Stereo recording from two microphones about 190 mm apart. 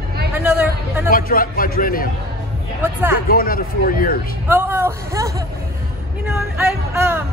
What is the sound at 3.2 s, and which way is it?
Speech, 50° left (ahead or behind).